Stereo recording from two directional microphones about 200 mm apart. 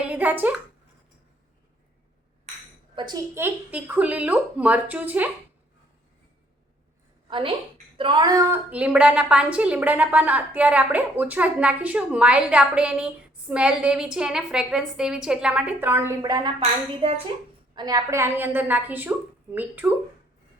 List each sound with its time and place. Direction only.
0.0 s a sound: 5° right (ahead or behind)
2.9 s a woman's voice: 20° right (ahead or behind)
7.3 s a woman's voice: 25° right (ahead or behind)
17.7 s a woman's voice: 20° right (ahead or behind)